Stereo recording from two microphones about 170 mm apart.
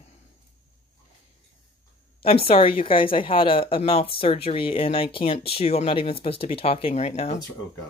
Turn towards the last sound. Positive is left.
turn(degrees=40)  # may be behind; listen again after turning